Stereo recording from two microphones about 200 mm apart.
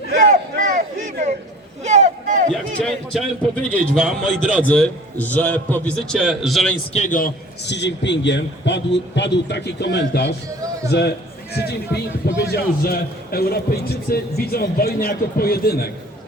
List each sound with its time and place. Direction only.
0.1 s a sound: 45° right (ahead or behind)
1.8 s boat: 35° right (ahead or behind)
2.5 s a man's voice: centre (ahead or behind)
6.9 s a man's voice: 40° left (ahead or behind); by 11.1 s 60° left (ahead or behind)
12.4 s a man's voice: 55° left (ahead or behind)